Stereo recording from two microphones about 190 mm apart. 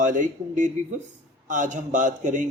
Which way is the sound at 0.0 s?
40° right (ahead or behind).